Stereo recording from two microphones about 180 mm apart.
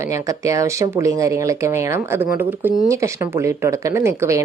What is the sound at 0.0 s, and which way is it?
A woman's voice, 15° right (ahead or behind).